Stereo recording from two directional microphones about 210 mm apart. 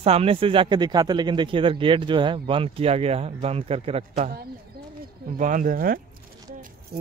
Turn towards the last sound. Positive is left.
turn(degrees=-40)  # may be behind; listen again after turning